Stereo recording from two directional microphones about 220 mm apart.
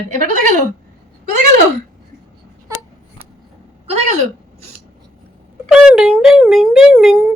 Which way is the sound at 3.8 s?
30° right (ahead or behind).